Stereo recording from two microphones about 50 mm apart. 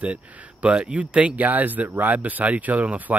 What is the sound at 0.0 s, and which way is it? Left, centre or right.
Speech, right.